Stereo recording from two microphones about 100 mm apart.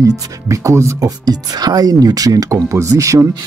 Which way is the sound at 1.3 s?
40° right (ahead or behind).